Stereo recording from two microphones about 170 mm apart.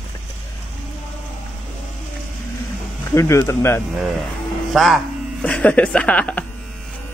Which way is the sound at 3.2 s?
15° left (ahead or behind).